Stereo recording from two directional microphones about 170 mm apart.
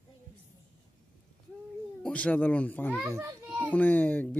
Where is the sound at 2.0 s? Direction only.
5° left (ahead or behind).